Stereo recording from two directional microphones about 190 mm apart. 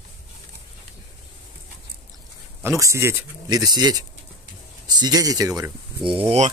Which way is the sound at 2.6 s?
15° right (ahead or behind).